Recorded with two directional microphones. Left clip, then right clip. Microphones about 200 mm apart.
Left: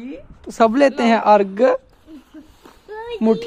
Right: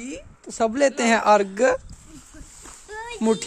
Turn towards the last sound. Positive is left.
turn(degrees=-5)  # may be behind; listen again after turning